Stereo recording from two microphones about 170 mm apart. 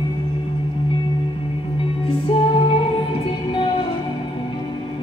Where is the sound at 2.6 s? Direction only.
30° left (ahead or behind).